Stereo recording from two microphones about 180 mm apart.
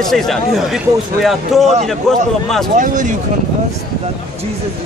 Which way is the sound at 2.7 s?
45° right (ahead or behind).